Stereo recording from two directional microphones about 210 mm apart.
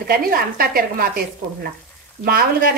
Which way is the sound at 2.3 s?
45° right (ahead or behind).